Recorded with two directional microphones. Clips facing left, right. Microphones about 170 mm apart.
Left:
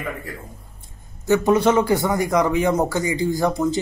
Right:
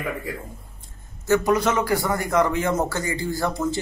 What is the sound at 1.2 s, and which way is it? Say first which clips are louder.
Speech: left 2 dB; 15° left (ahead or behind).